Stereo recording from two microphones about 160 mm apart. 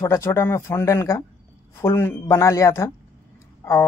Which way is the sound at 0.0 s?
15° left (ahead or behind).